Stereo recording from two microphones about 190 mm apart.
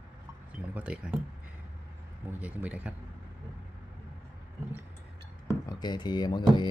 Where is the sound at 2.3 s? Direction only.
10° right (ahead or behind).